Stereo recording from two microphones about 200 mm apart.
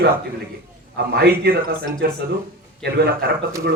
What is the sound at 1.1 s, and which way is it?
A man's voice, 50° right (ahead or behind).